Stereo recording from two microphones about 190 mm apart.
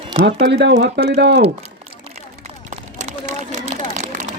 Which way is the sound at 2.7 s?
40° right (ahead or behind).